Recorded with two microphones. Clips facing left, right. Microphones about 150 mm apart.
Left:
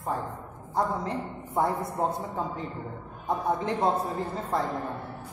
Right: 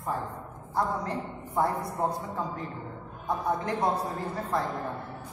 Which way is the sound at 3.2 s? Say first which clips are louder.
Left 2 dB; 25° left (ahead or behind).